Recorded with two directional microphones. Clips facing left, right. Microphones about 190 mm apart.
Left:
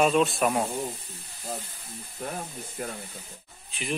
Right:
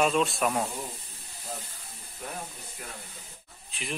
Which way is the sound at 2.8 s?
50° left (ahead or behind).